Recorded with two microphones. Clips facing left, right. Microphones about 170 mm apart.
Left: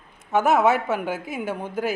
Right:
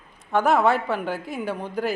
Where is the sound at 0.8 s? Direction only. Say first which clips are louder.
Left 1 dB; 20° left (ahead or behind).